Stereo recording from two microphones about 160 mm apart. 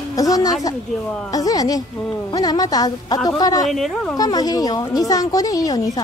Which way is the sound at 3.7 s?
Centre (ahead or behind).